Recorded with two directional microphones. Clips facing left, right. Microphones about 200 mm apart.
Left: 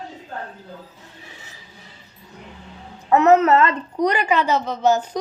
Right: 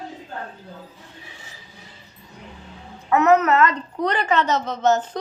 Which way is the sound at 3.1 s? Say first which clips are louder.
Left 2 dB; 30° left (ahead or behind).